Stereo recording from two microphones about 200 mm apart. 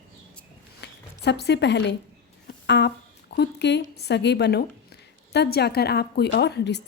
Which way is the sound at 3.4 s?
60° left (ahead or behind).